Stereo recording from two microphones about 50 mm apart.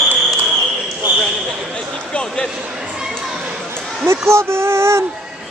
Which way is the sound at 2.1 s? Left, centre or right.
Centre.